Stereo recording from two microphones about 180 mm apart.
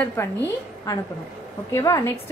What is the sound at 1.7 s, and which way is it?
Speech, 15° left (ahead or behind).